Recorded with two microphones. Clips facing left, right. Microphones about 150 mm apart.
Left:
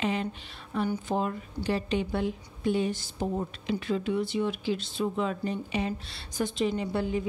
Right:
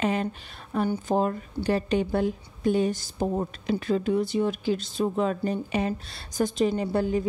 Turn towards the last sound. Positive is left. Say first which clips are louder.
# right 4 dB
turn(degrees=-45)  # may be behind; listen again after turning